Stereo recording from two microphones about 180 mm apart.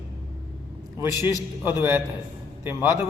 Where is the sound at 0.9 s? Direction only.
15° right (ahead or behind).